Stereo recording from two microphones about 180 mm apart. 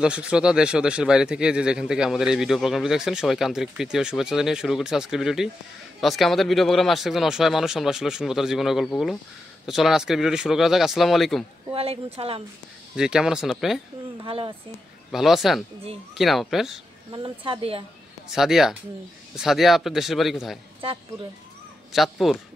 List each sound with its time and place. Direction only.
0.0 s speech: 5° right (ahead or behind)
11.7 s speech: 30° right (ahead or behind)
12.9 s speech: 5° right (ahead or behind)
14.2 s speech: 30° right (ahead or behind)
15.0 s speech: centre (ahead or behind)
17.1 s speech: 25° right (ahead or behind)
18.3 s speech: centre (ahead or behind)
21.9 s speech: centre (ahead or behind)